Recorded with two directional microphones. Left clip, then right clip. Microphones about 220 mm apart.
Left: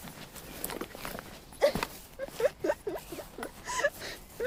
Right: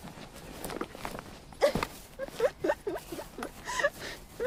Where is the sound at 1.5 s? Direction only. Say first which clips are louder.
Even; 20° right (ahead or behind).